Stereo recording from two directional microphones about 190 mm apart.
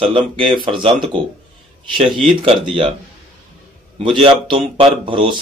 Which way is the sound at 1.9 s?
25° right (ahead or behind).